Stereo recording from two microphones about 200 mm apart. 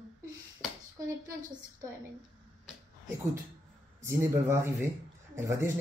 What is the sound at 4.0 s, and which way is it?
Speech, 15° right (ahead or behind).